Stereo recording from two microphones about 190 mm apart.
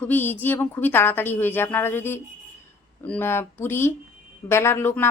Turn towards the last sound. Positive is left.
turn(degrees=10)  # may be behind; listen again after turning